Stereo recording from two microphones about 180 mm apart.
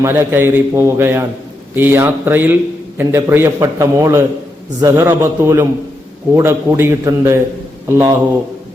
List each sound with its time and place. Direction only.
0.0 s a man's voice: 15° right (ahead or behind)